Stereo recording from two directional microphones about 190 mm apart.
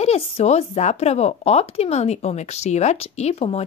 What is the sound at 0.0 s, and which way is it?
Speech, 35° left (ahead or behind).